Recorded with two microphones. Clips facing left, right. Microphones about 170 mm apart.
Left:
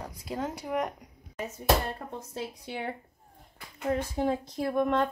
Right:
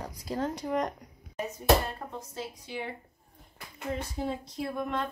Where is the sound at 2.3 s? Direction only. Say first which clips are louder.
Left 3 dB; 60° left (ahead or behind).